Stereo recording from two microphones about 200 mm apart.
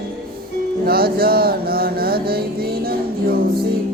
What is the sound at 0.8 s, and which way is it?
Mantra, 50° right (ahead or behind).